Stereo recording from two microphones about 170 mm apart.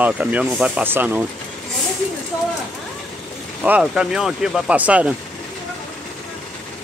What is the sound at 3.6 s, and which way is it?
Speech, 5° right (ahead or behind).